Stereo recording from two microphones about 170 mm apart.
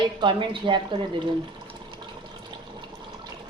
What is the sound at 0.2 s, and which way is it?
Speech, 30° right (ahead or behind).